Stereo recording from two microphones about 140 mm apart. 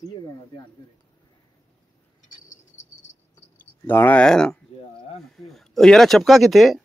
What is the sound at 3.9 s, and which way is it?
Speech, 10° left (ahead or behind).